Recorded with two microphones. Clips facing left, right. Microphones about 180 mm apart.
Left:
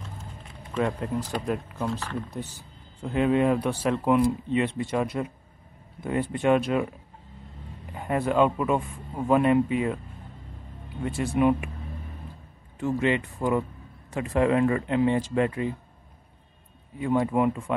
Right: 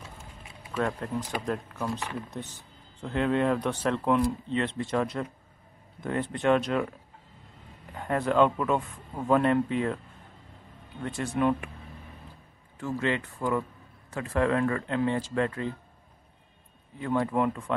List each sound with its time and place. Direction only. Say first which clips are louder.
0.0 s a sound: left 4 dB; 10° right (ahead or behind)
0.7 s speech: left 3 dB; 10° left (ahead or behind)
1.9 s speech: left 2 dB; 10° right (ahead or behind)
3.0 s speech: left 3 dB; 10° left (ahead or behind)
7.9 s speech: left 1 dB; 10° left (ahead or behind)
11.0 s speech: left 4 dB; 10° left (ahead or behind)
12.8 s speech: left 4 dB; 15° left (ahead or behind)
17.0 s speech: left 3 dB; 10° left (ahead or behind)